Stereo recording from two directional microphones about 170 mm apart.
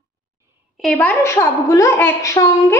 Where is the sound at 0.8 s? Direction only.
5° left (ahead or behind).